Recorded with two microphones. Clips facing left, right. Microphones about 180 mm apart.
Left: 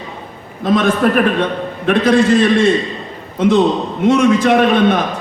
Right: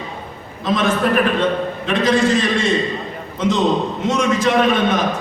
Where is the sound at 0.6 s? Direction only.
55° left (ahead or behind).